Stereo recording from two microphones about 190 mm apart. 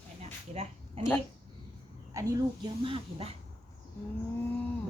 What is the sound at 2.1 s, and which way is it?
Speech, 15° right (ahead or behind).